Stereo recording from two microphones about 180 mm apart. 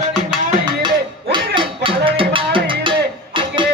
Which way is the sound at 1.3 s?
25° right (ahead or behind).